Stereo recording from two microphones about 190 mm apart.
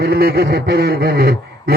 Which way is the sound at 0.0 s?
55° right (ahead or behind).